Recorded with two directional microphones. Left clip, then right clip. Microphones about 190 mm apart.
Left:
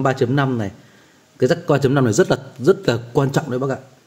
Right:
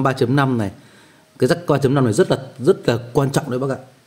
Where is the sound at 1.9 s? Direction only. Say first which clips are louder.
Even; 5° left (ahead or behind).